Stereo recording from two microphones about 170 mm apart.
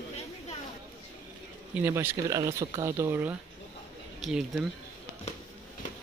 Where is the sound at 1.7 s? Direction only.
10° right (ahead or behind).